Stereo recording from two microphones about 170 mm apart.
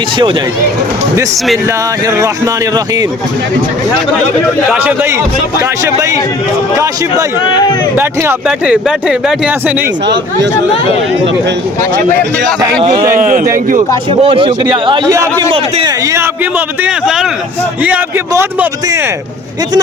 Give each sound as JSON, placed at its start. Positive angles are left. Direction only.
{"t": 1.6, "sound": "speech", "side_deg": -20}
{"t": 4.7, "sound": "speech", "side_deg": -10}
{"t": 7.4, "sound": "speech", "side_deg": 25}
{"t": 7.9, "sound": "speech", "side_deg": -10}
{"t": 12.8, "sound": "speech", "side_deg": -25}
{"t": 13.1, "sound": "speech", "side_deg": -50}
{"t": 14.1, "sound": "speech", "side_deg": -35}